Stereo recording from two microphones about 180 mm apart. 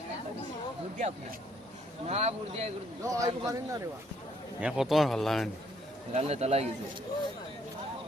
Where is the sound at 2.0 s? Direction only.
35° right (ahead or behind).